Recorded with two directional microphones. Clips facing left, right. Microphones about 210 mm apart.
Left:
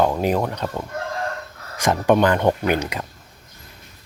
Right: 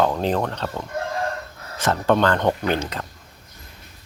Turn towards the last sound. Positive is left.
turn(degrees=10)  # may be behind; listen again after turning